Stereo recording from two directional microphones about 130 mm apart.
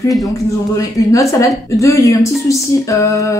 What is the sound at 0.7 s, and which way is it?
A woman's voice, 25° left (ahead or behind).